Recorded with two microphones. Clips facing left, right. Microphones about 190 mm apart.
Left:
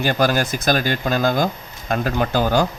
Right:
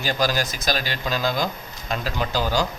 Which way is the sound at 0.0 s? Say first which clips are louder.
Left 5 dB; 55° left (ahead or behind).